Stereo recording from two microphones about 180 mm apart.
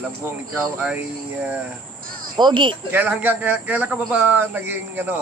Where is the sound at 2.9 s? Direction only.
10° right (ahead or behind).